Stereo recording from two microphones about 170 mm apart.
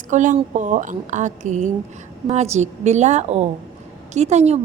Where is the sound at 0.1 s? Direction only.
50° right (ahead or behind).